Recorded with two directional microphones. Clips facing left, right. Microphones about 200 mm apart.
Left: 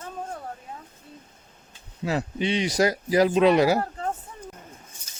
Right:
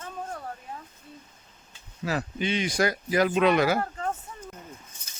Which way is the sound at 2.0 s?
25° left (ahead or behind).